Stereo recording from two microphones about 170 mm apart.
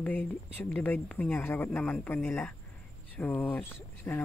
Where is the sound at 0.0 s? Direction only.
10° left (ahead or behind).